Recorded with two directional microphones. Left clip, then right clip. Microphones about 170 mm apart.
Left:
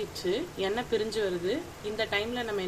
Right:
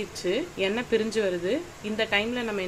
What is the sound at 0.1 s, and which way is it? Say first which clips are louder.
A woman's voice: right 3 dB; 40° right (ahead or behind).